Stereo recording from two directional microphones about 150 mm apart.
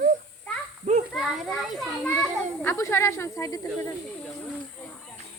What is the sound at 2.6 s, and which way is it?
Speech, 15° left (ahead or behind).